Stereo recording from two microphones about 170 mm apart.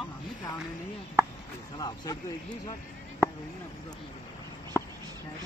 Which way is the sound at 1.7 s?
25° left (ahead or behind).